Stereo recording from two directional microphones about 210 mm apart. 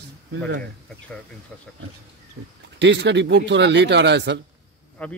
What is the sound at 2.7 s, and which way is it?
A man's voice, 55° right (ahead or behind).